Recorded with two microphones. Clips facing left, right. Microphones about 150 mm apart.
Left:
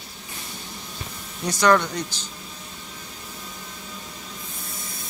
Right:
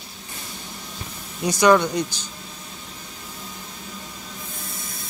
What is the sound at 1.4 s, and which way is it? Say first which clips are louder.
Speech: right 3 dB; 15° right (ahead or behind).